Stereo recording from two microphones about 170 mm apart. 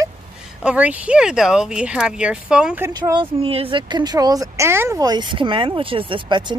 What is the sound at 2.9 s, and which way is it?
Speech, 25° right (ahead or behind).